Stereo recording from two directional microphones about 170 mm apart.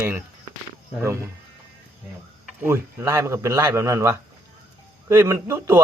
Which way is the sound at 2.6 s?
15° right (ahead or behind).